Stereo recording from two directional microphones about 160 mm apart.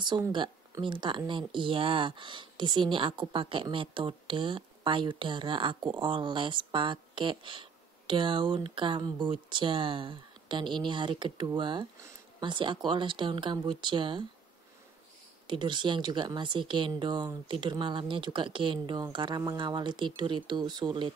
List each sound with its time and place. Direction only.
0.3 s a woman's voice: 30° right (ahead or behind)
15.4 s speech: 30° right (ahead or behind)